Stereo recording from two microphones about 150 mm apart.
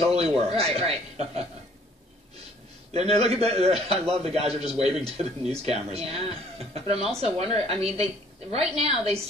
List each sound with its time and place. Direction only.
0.0 s a man's voice: 45° right (ahead or behind)
2.9 s a man's voice: 45° right (ahead or behind)